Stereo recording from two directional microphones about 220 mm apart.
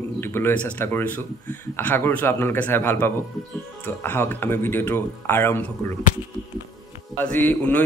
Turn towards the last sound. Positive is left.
turn(degrees=10)  # may be behind; listen again after turning